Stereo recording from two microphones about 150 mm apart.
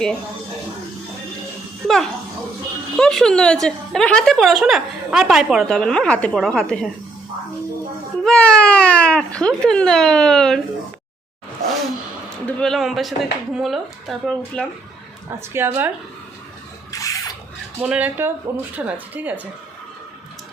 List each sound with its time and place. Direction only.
2.9 s a woman's voice: 5° left (ahead or behind)
8.2 s speech: 5° left (ahead or behind)
12.5 s a woman's voice: 5° left (ahead or behind)
15.3 s speech: 15° right (ahead or behind)
16.9 s a sound: 25° left (ahead or behind)
17.7 s speech: 10° right (ahead or behind)